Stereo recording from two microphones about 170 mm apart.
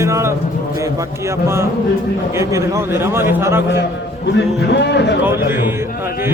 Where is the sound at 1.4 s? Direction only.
15° right (ahead or behind).